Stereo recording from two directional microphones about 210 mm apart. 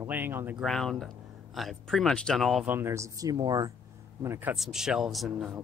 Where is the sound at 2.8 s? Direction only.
15° right (ahead or behind).